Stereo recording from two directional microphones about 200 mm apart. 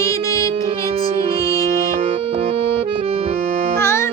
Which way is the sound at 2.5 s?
30° right (ahead or behind).